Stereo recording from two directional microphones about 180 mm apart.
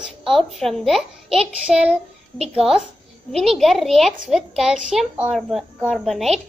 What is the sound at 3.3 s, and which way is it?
A woman's voice, centre (ahead or behind).